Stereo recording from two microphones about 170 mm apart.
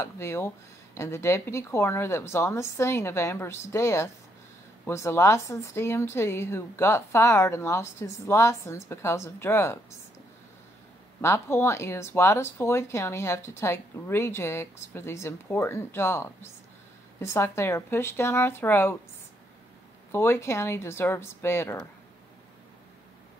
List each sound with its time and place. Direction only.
0.0 s speech: 15° left (ahead or behind)
11.1 s speech: 15° left (ahead or behind)
20.1 s speech: 15° left (ahead or behind)